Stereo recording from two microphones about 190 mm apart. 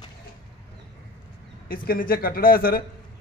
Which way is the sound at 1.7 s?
50° left (ahead or behind).